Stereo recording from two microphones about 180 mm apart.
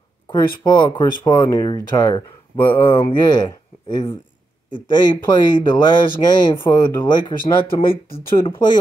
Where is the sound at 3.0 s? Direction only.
25° left (ahead or behind).